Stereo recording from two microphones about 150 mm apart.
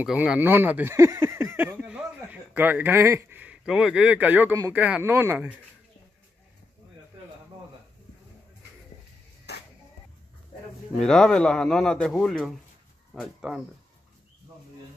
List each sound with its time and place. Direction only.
0.0 s speech: 5° right (ahead or behind)
9.5 s music: 90° left
11.0 s a man's voice: 5° left (ahead or behind)